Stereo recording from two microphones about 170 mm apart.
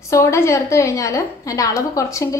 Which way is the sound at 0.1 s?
15° left (ahead or behind).